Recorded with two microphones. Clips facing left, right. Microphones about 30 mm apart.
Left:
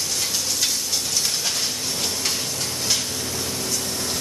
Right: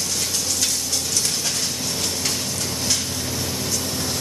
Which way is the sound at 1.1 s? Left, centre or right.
Centre.